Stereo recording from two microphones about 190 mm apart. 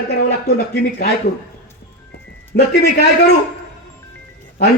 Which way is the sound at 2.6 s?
60° left (ahead or behind).